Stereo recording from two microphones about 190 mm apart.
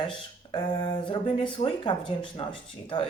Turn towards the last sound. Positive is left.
turn(degrees=25)  # may be behind; listen again after turning